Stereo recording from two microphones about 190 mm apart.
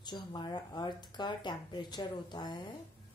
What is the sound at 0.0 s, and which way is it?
A woman's voice, 20° left (ahead or behind).